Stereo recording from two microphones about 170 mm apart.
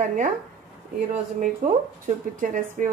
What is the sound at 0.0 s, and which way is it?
Speech, 50° right (ahead or behind).